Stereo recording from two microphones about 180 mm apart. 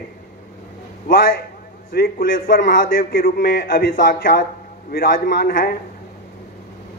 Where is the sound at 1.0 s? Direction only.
50° left (ahead or behind).